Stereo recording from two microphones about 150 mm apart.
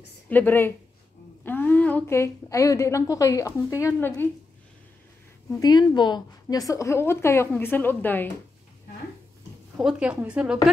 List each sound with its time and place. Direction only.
0.3 s a woman's voice: 10° left (ahead or behind)
5.6 s a woman's voice: 30° left (ahead or behind); by 8.3 s 10° left (ahead or behind)
9.8 s a woman's voice: 5° right (ahead or behind)